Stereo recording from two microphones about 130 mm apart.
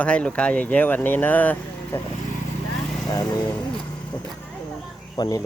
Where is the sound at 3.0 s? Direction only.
30° left (ahead or behind).